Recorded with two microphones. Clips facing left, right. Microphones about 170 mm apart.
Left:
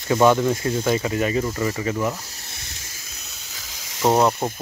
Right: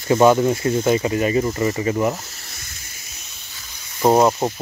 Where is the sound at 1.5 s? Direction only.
25° right (ahead or behind).